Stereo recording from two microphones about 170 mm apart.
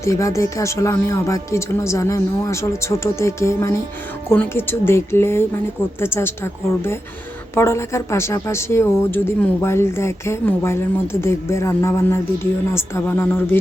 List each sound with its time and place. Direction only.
0.0 s a woman's voice: 20° left (ahead or behind)